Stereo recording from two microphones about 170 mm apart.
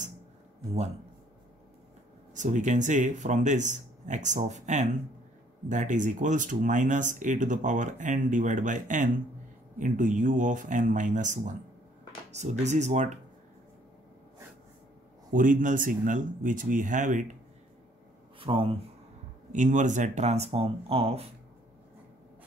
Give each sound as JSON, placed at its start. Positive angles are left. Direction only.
{"t": 2.3, "sound": "speech", "side_deg": -45}
{"t": 15.3, "sound": "speech", "side_deg": -50}
{"t": 18.4, "sound": "speech", "side_deg": -30}
{"t": 19.5, "sound": "speech", "side_deg": -45}